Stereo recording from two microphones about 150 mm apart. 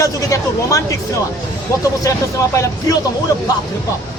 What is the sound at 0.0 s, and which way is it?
Speech, 20° left (ahead or behind).